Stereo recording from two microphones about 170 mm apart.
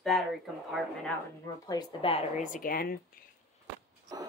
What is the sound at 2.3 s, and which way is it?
Speech, 50° left (ahead or behind).